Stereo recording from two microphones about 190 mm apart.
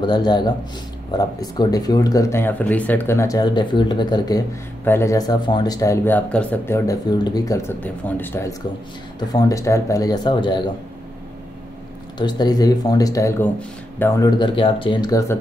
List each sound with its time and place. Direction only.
0.0 s speech: 20° left (ahead or behind)
12.2 s speech: 20° left (ahead or behind)